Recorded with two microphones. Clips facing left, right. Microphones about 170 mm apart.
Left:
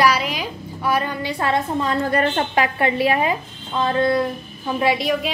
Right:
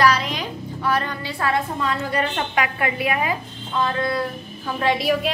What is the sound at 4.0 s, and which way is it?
Music, 25° left (ahead or behind).